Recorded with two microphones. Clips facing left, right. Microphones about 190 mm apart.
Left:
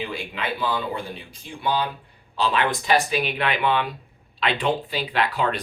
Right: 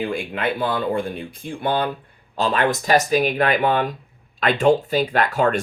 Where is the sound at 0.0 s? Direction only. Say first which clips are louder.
Right 6 dB; 50° right (ahead or behind).